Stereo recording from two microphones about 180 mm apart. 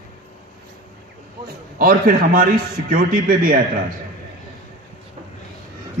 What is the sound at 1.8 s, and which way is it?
A man's voice, 55° right (ahead or behind).